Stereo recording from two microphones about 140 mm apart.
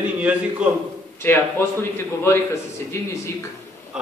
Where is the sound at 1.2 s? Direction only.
15° left (ahead or behind).